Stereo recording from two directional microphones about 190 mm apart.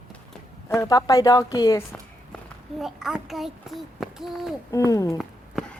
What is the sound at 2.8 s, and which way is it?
A child's voice, 5° right (ahead or behind).